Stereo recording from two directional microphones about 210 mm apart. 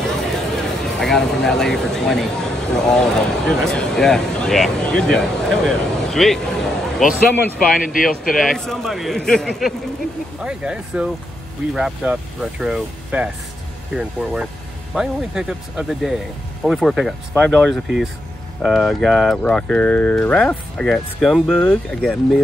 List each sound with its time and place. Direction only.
0.0 s speech: centre (ahead or behind)
7.8 s speech: 40° left (ahead or behind)
8.4 s speech: centre (ahead or behind)